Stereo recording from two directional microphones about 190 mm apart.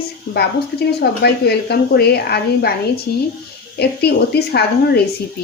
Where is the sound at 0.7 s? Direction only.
55° left (ahead or behind).